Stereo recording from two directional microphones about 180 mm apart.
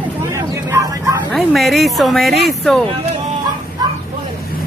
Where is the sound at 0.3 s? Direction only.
15° right (ahead or behind).